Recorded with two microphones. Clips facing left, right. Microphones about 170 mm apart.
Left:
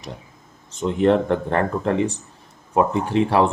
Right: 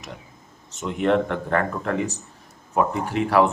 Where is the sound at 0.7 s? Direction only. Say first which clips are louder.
Left 4 dB; 35° left (ahead or behind).